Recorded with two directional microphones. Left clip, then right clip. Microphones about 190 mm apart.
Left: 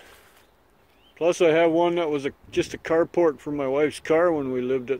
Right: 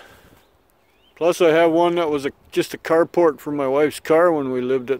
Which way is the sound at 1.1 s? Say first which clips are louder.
Right 4 dB; 30° right (ahead or behind).